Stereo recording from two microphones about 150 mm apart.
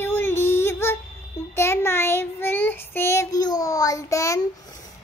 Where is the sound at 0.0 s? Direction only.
15° left (ahead or behind).